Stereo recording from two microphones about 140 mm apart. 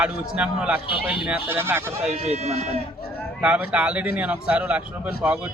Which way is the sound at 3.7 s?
10° right (ahead or behind).